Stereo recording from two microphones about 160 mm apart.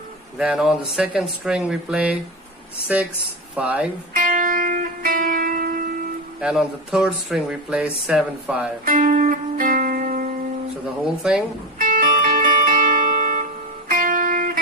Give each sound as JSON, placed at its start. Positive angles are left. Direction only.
{"t": 0.4, "sound": "speech", "side_deg": -5}
{"t": 3.5, "sound": "speech", "side_deg": -10}
{"t": 4.1, "sound": "music", "side_deg": -55}
{"t": 6.4, "sound": "speech", "side_deg": -5}
{"t": 8.8, "sound": "music", "side_deg": -55}
{"t": 11.3, "sound": "speech", "side_deg": -5}
{"t": 11.8, "sound": "music", "side_deg": -60}